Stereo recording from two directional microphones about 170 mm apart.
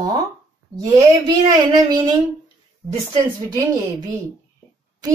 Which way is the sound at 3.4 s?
25° right (ahead or behind).